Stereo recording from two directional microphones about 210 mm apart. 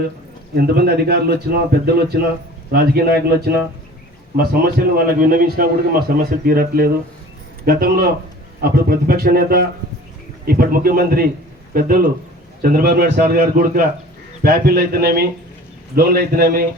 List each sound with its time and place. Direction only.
0.5 s a man's voice: 50° right (ahead or behind)
4.4 s a man's voice: 45° right (ahead or behind)